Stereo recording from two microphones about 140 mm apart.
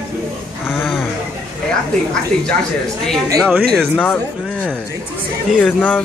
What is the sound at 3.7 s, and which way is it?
Speech, 5° left (ahead or behind).